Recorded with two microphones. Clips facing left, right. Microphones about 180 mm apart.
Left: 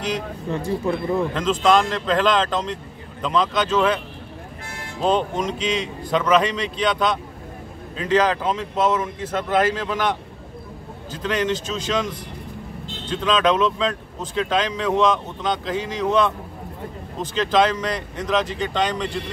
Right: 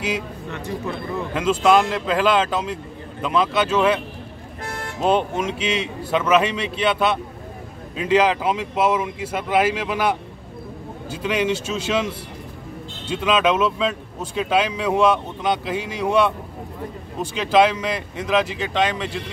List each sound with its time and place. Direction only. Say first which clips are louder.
0.5 s speech: left 6 dB; 30° left (ahead or behind)
1.3 s speech: right 4 dB; 10° right (ahead or behind)
4.6 s vehicle: right 8 dB; 60° right (ahead or behind)
5.0 s speech: right 1 dB; 5° right (ahead or behind)